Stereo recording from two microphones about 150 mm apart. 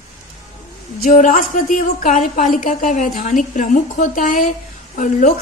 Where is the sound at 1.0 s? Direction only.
60° left (ahead or behind).